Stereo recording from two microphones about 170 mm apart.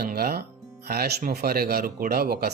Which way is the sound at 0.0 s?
65° right (ahead or behind).